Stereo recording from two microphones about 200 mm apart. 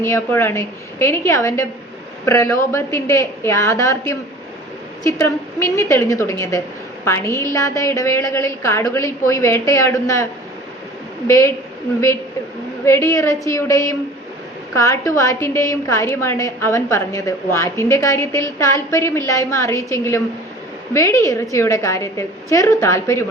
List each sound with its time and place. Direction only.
0.0 s a woman's voice: 15° left (ahead or behind)
11.3 s a woman's voice: 15° left (ahead or behind)
12.8 s a woman's voice: 15° left (ahead or behind)